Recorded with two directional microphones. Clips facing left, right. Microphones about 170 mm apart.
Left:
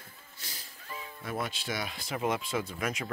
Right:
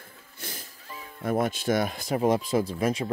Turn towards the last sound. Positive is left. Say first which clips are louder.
# right 8 dB
turn(degrees=-30)  # may be behind; listen again after turning